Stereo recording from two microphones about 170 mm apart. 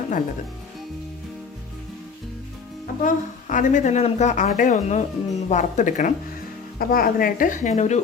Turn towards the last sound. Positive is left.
turn(degrees=40)  # may be behind; listen again after turning